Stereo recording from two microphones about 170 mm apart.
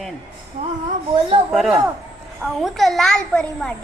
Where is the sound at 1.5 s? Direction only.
Centre (ahead or behind).